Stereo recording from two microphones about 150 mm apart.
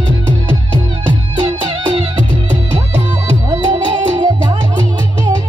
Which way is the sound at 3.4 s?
35° right (ahead or behind).